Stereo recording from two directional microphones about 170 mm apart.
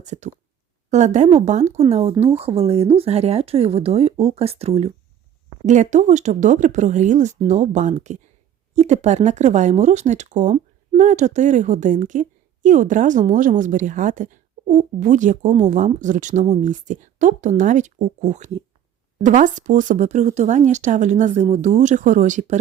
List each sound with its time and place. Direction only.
0.0 s speech: 45° right (ahead or behind)